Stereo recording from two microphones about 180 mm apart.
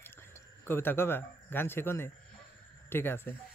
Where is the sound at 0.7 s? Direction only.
10° left (ahead or behind).